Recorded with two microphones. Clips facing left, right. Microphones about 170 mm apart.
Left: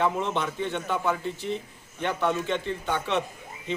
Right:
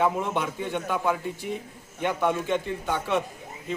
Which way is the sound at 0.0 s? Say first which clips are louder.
Right 1 dB; 10° right (ahead or behind).